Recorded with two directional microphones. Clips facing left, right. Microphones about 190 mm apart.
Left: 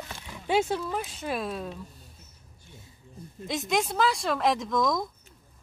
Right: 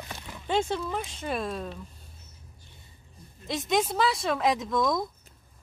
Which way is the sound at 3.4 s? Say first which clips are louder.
Right 1 dB; centre (ahead or behind).